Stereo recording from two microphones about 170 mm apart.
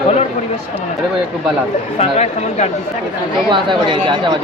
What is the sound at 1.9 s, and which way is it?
Speech, 40° left (ahead or behind).